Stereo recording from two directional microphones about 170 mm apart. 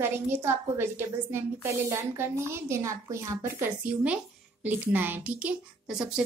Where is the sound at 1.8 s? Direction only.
15° right (ahead or behind).